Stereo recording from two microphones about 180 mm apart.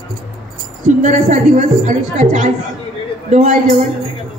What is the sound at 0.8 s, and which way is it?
A woman's voice, 40° right (ahead or behind).